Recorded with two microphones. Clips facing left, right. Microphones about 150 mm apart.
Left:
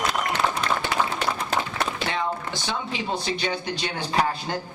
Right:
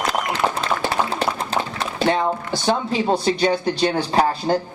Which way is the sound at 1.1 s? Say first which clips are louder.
Right 4 dB; 35° right (ahead or behind).